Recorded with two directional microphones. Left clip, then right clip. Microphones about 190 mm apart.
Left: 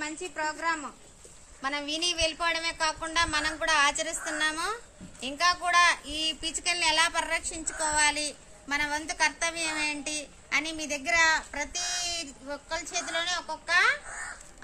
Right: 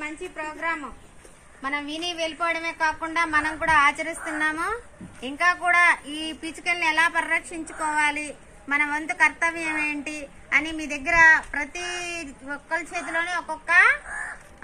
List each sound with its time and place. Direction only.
0.0 s a woman's voice: 50° left (ahead or behind)
1.6 s a woman's voice: 60° left (ahead or behind)
5.2 s a woman's voice: 90° left
6.6 s a woman's voice: 65° left (ahead or behind)
8.6 s a woman's voice: 90° left
13.1 s a child's voice: 25° left (ahead or behind)